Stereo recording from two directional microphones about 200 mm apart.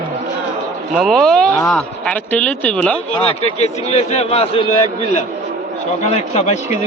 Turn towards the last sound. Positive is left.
turn(degrees=30)  # may be behind; listen again after turning